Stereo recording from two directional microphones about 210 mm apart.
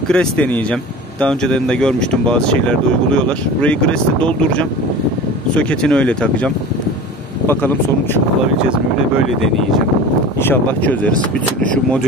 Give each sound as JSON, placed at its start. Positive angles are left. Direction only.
{"t": 0.1, "sound": "speech", "side_deg": 5}
{"t": 10.4, "sound": "speech", "side_deg": 10}